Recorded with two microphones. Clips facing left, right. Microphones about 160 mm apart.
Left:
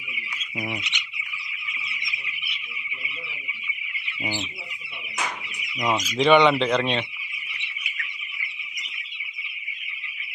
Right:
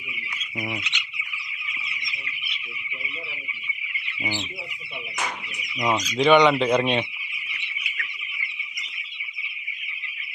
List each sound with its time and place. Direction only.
0.7 s fowl: 15° left (ahead or behind)
4.2 s fowl: 5° left (ahead or behind)
5.9 s fowl: 5° left (ahead or behind)
6.1 s speech: centre (ahead or behind)
6.7 s speech: 15° right (ahead or behind)